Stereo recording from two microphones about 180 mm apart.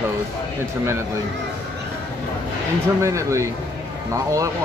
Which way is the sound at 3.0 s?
15° right (ahead or behind).